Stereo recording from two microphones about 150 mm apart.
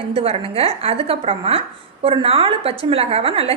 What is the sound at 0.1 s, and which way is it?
A woman's voice, 40° right (ahead or behind).